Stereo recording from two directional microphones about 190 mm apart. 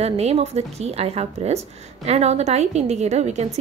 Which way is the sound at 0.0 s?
35° right (ahead or behind).